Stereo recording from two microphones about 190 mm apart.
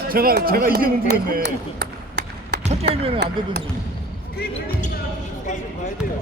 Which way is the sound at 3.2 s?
60° right (ahead or behind).